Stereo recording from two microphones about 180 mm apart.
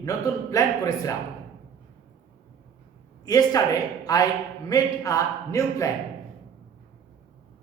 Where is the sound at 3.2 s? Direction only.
20° left (ahead or behind).